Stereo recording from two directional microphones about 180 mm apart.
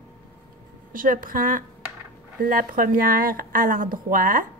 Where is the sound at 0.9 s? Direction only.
50° right (ahead or behind).